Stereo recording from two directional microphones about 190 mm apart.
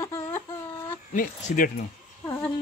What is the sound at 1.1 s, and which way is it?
Speech, 45° left (ahead or behind).